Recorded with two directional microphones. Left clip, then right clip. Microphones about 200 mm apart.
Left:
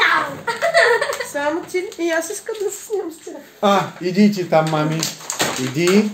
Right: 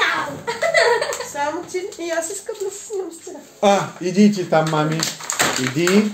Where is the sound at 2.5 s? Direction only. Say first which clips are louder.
Left 2 dB; 55° left (ahead or behind).